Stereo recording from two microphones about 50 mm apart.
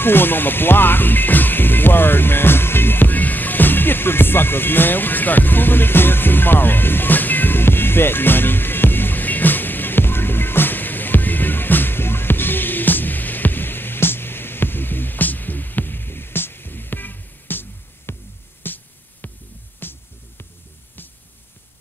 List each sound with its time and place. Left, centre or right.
0.0 s music: left
19.8 s music: left